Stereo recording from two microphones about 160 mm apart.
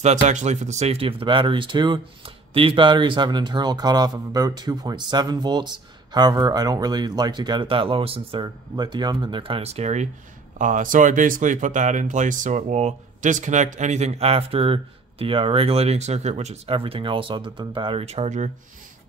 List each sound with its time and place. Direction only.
0.0 s speech: 50° right (ahead or behind)
10.6 s speech: 55° right (ahead or behind)